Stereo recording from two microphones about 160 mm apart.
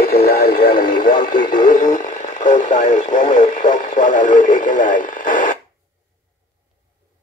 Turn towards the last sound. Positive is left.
turn(degrees=55)  # may be behind; listen again after turning